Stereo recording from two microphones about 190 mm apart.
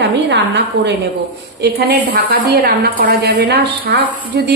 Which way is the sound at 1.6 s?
55° right (ahead or behind).